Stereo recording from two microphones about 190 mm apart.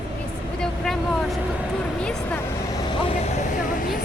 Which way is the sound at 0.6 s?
Centre (ahead or behind).